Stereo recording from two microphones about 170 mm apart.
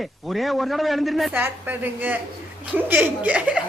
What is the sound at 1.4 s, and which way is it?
A woman's voice, 10° right (ahead or behind).